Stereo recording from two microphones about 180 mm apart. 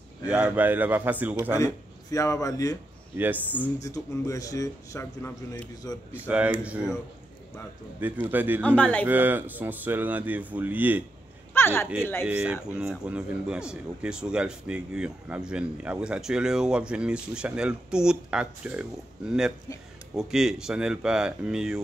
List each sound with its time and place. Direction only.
0.3 s speech: 10° right (ahead or behind)
1.6 s a man's voice: 15° left (ahead or behind)
6.2 s speech: 10° right (ahead or behind)
8.0 s speech: 10° right (ahead or behind)
8.6 s speech: 10° left (ahead or behind)
9.0 s speech: 10° right (ahead or behind)
11.5 s speech: 15° left (ahead or behind)
12.3 s speech: 5° right (ahead or behind)